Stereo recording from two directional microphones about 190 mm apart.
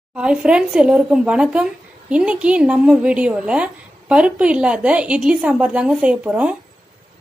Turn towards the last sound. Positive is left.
turn(degrees=-5)  # may be behind; listen again after turning